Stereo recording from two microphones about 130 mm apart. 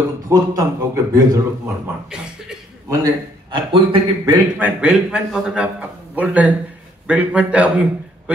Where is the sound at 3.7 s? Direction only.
40° right (ahead or behind).